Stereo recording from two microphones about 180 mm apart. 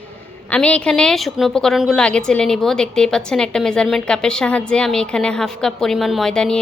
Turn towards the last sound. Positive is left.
turn(degrees=5)  # may be behind; listen again after turning